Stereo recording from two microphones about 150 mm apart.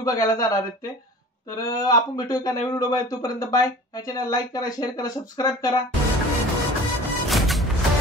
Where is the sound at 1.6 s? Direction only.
25° left (ahead or behind).